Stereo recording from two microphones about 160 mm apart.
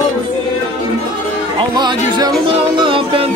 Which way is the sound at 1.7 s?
25° right (ahead or behind).